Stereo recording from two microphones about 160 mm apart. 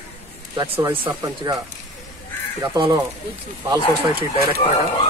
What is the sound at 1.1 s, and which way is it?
Speech, 25° right (ahead or behind).